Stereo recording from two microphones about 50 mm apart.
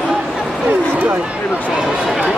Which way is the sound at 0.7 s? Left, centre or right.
Right.